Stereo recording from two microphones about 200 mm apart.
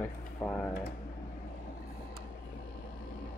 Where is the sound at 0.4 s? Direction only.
5° left (ahead or behind).